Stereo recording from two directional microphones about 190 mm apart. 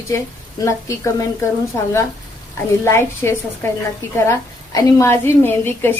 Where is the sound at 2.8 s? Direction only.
15° left (ahead or behind).